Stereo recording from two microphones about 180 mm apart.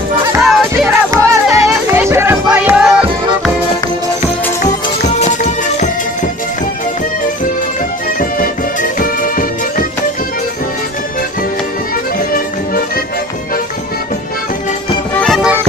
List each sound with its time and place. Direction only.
0.4 s music: centre (ahead or behind)
1.1 s music: 15° right (ahead or behind)
5.1 s music: 40° left (ahead or behind)
9.0 s music: 50° left (ahead or behind)
12.3 s music: 55° left (ahead or behind)
15.2 s music: centre (ahead or behind)